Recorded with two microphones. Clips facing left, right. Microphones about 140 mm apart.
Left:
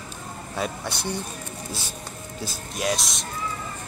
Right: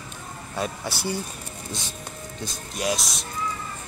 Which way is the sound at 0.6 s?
5° right (ahead or behind).